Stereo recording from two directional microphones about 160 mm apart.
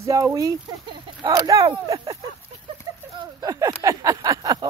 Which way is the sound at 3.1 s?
20° right (ahead or behind).